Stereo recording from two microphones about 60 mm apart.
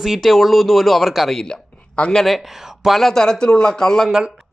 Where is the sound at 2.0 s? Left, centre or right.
Centre.